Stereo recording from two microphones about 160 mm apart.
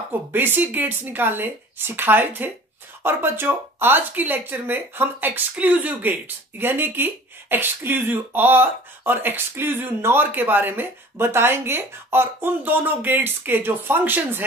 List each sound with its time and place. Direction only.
0.3 s speech: 10° right (ahead or behind)